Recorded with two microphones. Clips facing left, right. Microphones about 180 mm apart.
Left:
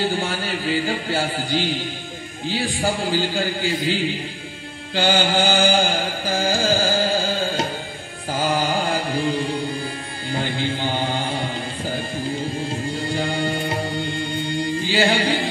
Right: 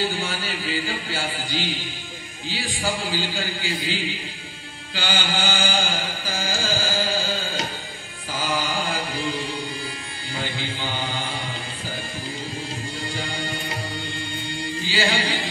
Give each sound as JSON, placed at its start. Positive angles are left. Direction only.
{"t": 0.2, "sound": "a sound", "side_deg": 55}
{"t": 2.4, "sound": "a man's voice", "side_deg": 55}
{"t": 4.9, "sound": "a man's voice", "side_deg": 55}
{"t": 6.3, "sound": "carnatic music", "side_deg": 55}
{"t": 8.4, "sound": "mantra", "side_deg": 50}
{"t": 10.3, "sound": "chant", "side_deg": 50}
{"t": 13.1, "sound": "music", "side_deg": 55}